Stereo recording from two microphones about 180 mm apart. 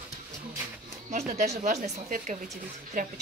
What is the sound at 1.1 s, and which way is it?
A woman's voice, 40° right (ahead or behind).